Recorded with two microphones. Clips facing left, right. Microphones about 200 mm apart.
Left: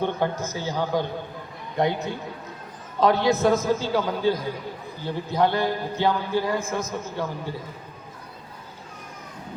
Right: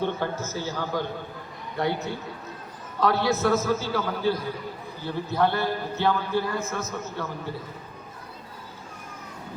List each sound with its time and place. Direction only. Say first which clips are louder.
0.0 s a man's voice: left 2 dB; 15° left (ahead or behind)
3.0 s a man's voice: left 3 dB; 15° left (ahead or behind)